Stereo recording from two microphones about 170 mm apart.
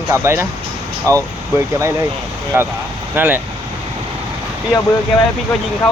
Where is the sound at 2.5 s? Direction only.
15° right (ahead or behind).